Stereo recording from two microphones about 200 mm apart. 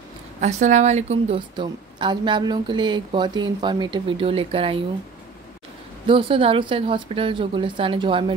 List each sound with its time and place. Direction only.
0.4 s a woman's voice: 35° right (ahead or behind)
6.0 s a woman's voice: 25° right (ahead or behind)